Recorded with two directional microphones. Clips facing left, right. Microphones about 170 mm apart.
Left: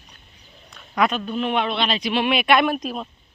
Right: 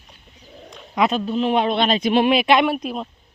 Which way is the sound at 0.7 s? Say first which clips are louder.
Right 1 dB; 25° right (ahead or behind).